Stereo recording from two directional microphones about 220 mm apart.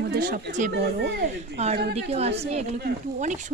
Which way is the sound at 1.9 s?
30° right (ahead or behind).